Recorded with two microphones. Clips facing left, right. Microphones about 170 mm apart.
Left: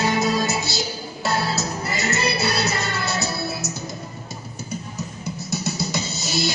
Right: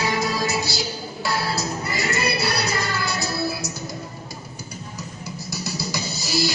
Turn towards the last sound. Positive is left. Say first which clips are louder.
# right 1 dB
turn(degrees=20)  # may be behind; listen again after turning